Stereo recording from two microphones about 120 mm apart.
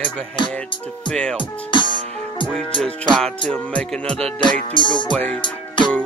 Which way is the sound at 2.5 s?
5° left (ahead or behind).